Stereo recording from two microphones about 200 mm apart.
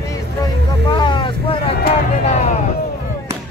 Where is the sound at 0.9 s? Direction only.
25° left (ahead or behind).